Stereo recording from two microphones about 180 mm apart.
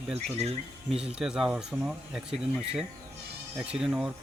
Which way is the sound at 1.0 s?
5° right (ahead or behind).